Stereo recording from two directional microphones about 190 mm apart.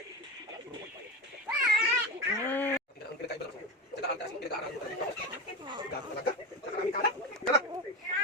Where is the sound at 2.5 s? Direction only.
10° left (ahead or behind).